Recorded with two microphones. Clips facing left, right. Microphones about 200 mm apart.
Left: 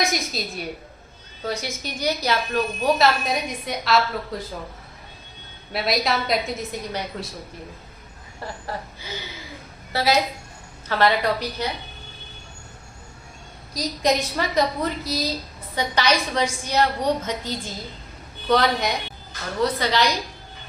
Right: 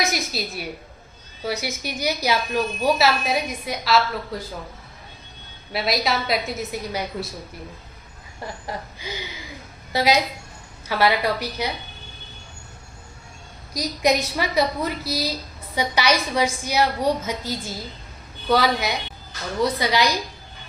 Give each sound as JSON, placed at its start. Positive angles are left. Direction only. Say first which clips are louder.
{"t": 0.0, "sound": "a woman's voice", "louder": "even", "side_deg": -5}
{"t": 5.7, "sound": "a woman's voice", "louder": "even", "side_deg": 0}
{"t": 8.6, "sound": "a woman's voice", "louder": "right 1 dB", "side_deg": -15}
{"t": 13.7, "sound": "a woman's voice", "louder": "right 1 dB", "side_deg": -10}